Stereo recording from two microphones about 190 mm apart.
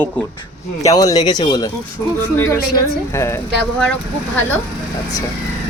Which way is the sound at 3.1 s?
15° left (ahead or behind).